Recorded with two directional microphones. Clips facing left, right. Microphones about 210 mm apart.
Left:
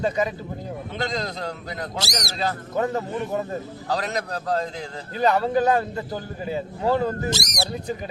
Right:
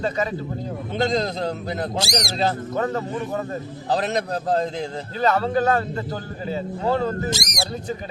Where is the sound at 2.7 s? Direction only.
10° left (ahead or behind).